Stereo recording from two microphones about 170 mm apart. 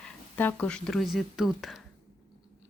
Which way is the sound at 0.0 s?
10° left (ahead or behind).